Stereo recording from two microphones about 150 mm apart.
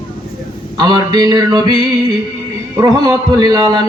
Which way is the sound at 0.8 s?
25° right (ahead or behind).